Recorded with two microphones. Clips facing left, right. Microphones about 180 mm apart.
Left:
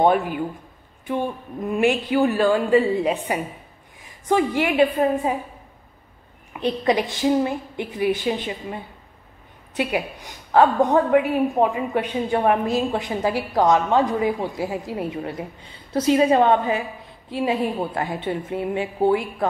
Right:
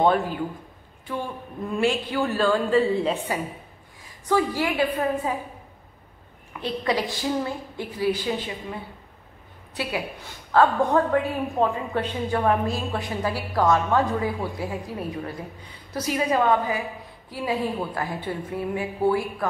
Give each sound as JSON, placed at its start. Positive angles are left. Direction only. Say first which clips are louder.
{"t": 0.0, "sound": "a woman's voice", "louder": "left 2 dB", "side_deg": 15}
{"t": 6.5, "sound": "a woman's voice", "louder": "left 5 dB", "side_deg": 20}
{"t": 9.8, "sound": "a woman's voice", "louder": "left 5 dB", "side_deg": 20}